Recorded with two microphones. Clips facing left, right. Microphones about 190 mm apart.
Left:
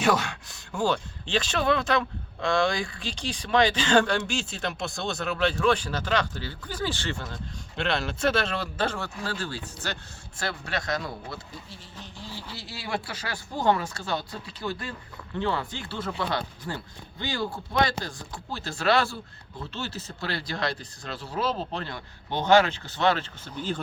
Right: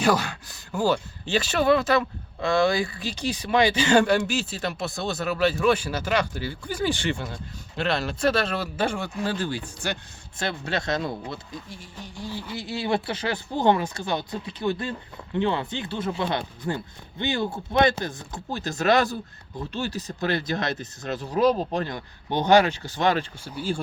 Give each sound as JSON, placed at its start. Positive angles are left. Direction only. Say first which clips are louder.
{"t": 0.0, "sound": "speech", "louder": "right 2 dB", "side_deg": 0}
{"t": 7.8, "sound": "speech", "louder": "right 2 dB", "side_deg": 0}